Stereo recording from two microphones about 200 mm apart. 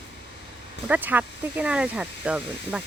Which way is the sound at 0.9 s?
10° right (ahead or behind).